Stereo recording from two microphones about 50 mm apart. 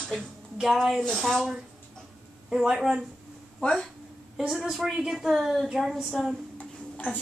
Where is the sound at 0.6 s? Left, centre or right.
Centre.